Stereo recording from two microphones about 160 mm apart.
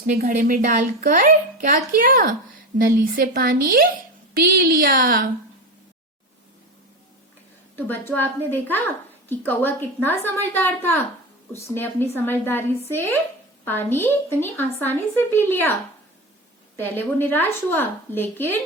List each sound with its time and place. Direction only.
0.1 s a woman's voice: 50° right (ahead or behind)
7.8 s a woman's voice: 10° left (ahead or behind)
13.7 s a woman's voice: 15° left (ahead or behind)
16.7 s a woman's voice: 10° left (ahead or behind)